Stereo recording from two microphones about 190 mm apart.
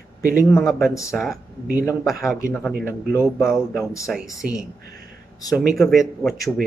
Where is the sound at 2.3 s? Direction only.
15° left (ahead or behind).